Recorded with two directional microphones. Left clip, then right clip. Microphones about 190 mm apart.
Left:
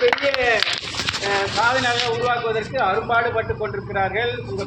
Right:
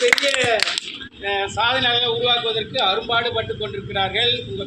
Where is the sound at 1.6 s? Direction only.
5° right (ahead or behind).